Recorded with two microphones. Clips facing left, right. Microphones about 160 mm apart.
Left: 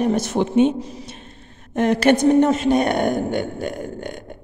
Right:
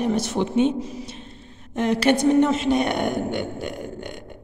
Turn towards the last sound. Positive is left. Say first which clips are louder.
# left 4 dB
turn(degrees=45)  # may be behind; listen again after turning